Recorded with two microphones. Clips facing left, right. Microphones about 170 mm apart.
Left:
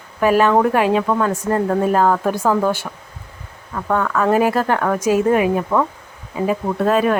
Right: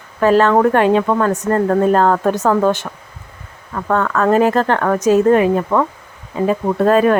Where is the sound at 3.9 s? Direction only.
10° left (ahead or behind).